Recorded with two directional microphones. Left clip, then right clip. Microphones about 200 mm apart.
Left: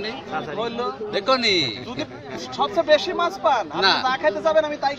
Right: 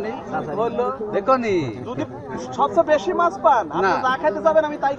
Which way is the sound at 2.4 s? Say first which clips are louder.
Right 4 dB; 60° left (ahead or behind).